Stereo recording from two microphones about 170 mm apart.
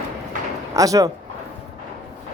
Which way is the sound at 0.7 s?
20° right (ahead or behind).